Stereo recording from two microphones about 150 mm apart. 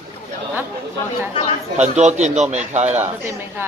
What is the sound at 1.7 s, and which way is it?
A man's voice, 50° right (ahead or behind).